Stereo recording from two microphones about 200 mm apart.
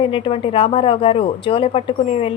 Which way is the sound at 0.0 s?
25° left (ahead or behind).